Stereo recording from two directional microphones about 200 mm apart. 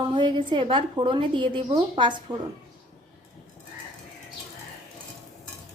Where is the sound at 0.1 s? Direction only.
25° right (ahead or behind).